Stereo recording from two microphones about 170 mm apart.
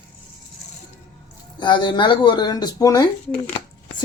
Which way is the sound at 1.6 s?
30° left (ahead or behind).